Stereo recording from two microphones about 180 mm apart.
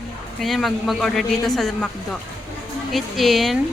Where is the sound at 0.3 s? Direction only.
Centre (ahead or behind).